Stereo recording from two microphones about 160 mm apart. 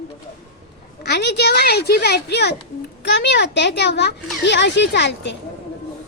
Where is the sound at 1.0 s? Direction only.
90° left.